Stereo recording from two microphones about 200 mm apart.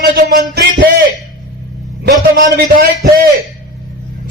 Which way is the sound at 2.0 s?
50° right (ahead or behind).